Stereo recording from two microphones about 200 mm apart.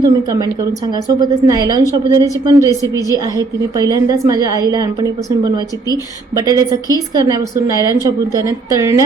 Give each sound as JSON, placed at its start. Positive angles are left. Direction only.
{"t": 0.0, "sound": "a woman's voice", "side_deg": -20}